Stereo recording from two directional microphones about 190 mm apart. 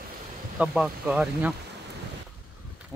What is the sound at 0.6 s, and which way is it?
Speech, 5° right (ahead or behind).